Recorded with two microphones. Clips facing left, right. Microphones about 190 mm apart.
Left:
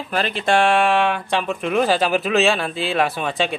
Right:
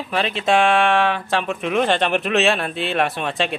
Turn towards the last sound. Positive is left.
turn(degrees=0)  # may be behind; listen again after turning